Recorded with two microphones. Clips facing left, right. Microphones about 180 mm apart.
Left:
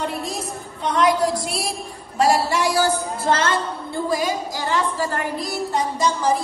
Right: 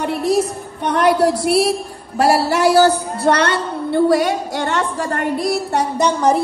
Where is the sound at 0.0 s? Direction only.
70° right (ahead or behind).